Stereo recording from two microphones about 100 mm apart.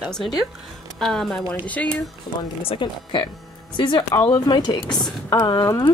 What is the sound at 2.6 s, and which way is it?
A woman's voice, 55° left (ahead or behind).